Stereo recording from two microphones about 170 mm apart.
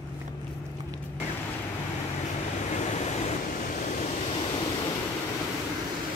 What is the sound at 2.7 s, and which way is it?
Vehicle, 40° left (ahead or behind).